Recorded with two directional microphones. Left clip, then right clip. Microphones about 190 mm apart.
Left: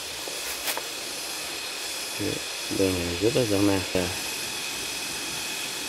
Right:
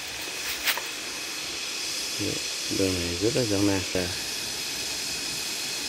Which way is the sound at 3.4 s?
Centre (ahead or behind).